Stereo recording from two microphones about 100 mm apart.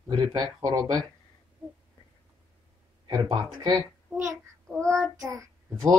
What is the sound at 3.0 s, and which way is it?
Speech, 50° right (ahead or behind).